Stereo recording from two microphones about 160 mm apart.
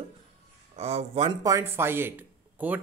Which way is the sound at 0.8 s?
40° right (ahead or behind).